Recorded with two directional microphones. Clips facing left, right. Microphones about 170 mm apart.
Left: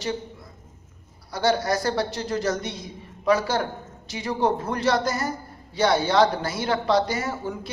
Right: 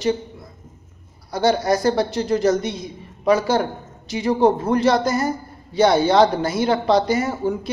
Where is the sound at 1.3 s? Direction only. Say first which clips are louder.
Right 4 dB; 20° right (ahead or behind).